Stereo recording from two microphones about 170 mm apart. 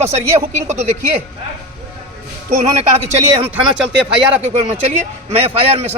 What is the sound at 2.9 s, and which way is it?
Speech, 40° right (ahead or behind).